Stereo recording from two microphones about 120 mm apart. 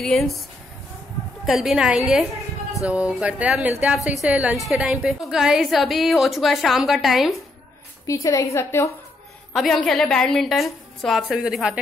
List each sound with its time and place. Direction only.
0.0 s a woman's voice: 5° left (ahead or behind)
1.4 s a woman's voice: centre (ahead or behind)
8.1 s a woman's voice: 30° left (ahead or behind)
9.5 s a woman's voice: centre (ahead or behind)